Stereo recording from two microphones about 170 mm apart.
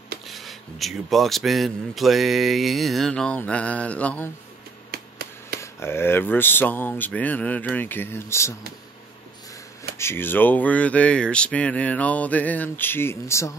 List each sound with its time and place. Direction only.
0.3 s speech: centre (ahead or behind)
4.9 s a sound: 65° right (ahead or behind)
5.6 s speech: 15° left (ahead or behind)
9.9 s speech: 15° left (ahead or behind)